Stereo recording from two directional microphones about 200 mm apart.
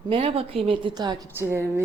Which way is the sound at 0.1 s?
25° right (ahead or behind).